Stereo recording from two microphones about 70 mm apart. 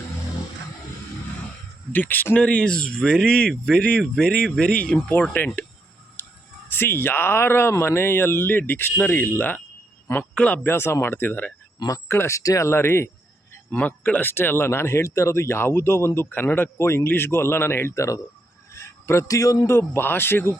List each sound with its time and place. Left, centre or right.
1.9 s speech: left
2.4 s speech: centre
6.2 s music: left
6.7 s speech: left
10.3 s speech: centre
10.6 s speech: left
12.0 s speech: left
12.4 s speech: left
13.7 s speech: left
18.7 s a sound: left
19.3 s a man's voice: left
19.6 s speech: left